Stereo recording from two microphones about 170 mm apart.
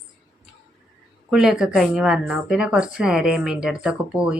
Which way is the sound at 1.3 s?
5° right (ahead or behind).